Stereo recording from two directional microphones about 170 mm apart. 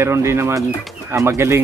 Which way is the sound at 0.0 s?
15° right (ahead or behind).